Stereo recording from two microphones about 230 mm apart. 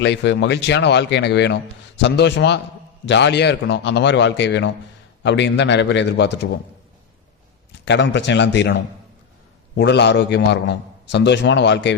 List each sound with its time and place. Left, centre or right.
0.0 s a man's voice: left
7.9 s a man's voice: left